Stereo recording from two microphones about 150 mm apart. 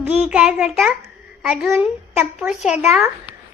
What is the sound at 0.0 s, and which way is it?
A child's voice, 5° right (ahead or behind).